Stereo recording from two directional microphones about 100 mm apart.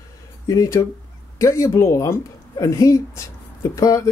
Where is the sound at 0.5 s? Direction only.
30° left (ahead or behind).